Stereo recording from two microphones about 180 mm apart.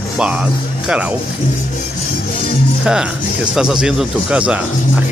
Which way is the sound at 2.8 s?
5° right (ahead or behind).